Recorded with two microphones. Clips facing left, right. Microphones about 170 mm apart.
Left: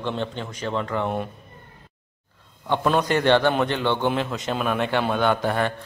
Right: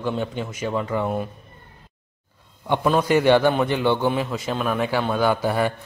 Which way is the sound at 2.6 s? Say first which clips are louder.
Right 1 dB; 10° right (ahead or behind).